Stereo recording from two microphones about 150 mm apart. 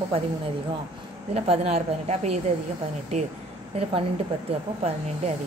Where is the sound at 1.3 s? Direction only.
45° right (ahead or behind).